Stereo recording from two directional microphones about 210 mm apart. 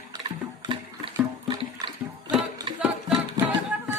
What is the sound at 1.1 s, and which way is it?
Music, 20° right (ahead or behind).